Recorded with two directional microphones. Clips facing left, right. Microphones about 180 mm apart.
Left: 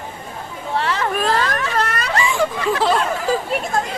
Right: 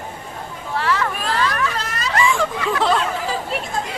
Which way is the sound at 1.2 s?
45° left (ahead or behind).